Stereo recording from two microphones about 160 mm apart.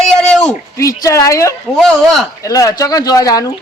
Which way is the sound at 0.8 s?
20° left (ahead or behind).